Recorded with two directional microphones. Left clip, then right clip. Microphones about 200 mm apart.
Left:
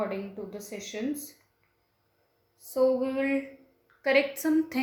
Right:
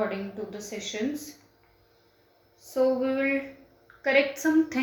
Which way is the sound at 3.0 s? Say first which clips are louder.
Right 2 dB; 40° left (ahead or behind).